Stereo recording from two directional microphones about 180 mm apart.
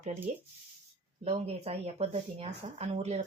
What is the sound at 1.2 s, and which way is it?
Speech, 35° right (ahead or behind).